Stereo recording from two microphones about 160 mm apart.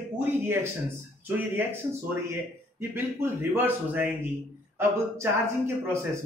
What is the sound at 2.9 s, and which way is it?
A man's voice, 15° right (ahead or behind).